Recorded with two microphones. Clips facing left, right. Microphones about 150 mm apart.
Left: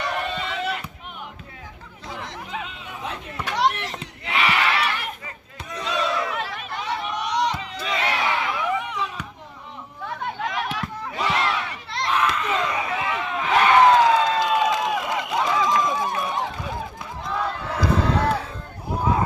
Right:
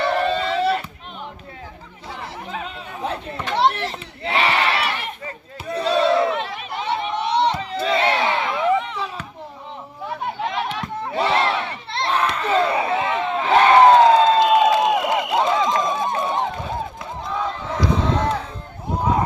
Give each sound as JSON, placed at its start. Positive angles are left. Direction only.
{"t": 0.0, "sound": "a sound", "side_deg": -30}
{"t": 2.6, "sound": "chatter", "side_deg": -35}
{"t": 3.5, "sound": "crowd", "side_deg": -30}
{"t": 5.6, "sound": "battle cry", "side_deg": -30}
{"t": 6.8, "sound": "crowd", "side_deg": -25}
{"t": 10.4, "sound": "crowd", "side_deg": -25}
{"t": 17.2, "sound": "crowd", "side_deg": 0}